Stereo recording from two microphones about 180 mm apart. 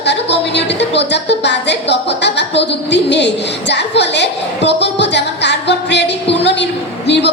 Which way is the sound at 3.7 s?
70° left (ahead or behind).